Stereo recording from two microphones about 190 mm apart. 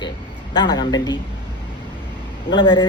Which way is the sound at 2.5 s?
25° left (ahead or behind).